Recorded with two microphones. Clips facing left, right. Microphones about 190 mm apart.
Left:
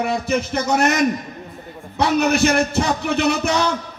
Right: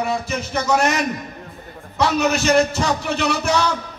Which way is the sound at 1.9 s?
60° left (ahead or behind).